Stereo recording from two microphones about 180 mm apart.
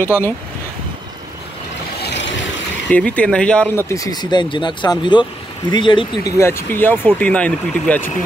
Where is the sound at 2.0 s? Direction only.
75° left (ahead or behind).